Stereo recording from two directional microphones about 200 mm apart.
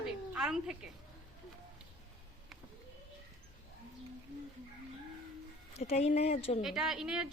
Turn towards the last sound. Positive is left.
turn(degrees=-5)  # may be behind; listen again after turning